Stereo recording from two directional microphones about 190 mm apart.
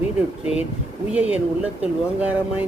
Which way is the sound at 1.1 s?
5° right (ahead or behind).